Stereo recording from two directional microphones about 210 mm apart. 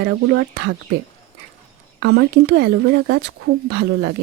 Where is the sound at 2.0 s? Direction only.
55° right (ahead or behind).